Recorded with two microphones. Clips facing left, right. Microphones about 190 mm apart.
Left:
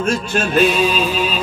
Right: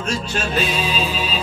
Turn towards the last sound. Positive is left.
turn(degrees=55)  # may be behind; listen again after turning